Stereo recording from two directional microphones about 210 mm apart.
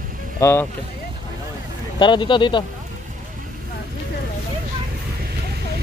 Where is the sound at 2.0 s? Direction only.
25° left (ahead or behind).